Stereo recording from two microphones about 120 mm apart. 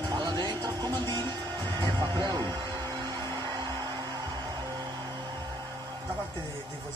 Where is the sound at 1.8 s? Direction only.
35° right (ahead or behind).